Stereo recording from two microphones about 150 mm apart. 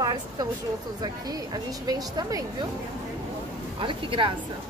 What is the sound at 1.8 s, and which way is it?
Speech, 25° right (ahead or behind).